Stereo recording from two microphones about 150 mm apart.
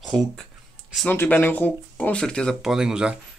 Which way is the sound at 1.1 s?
15° left (ahead or behind).